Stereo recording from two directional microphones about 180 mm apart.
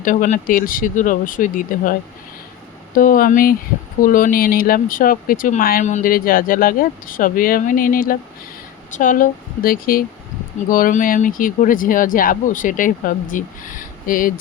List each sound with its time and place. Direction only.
0.0 s speech: 50° left (ahead or behind)